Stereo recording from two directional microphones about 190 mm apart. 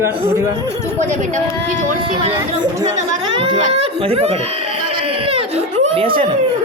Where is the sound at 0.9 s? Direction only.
40° right (ahead or behind).